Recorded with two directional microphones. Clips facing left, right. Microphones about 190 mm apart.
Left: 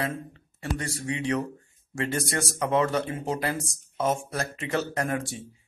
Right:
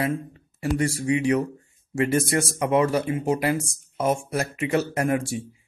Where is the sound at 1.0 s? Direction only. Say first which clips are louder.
Right 6 dB; 30° left (ahead or behind).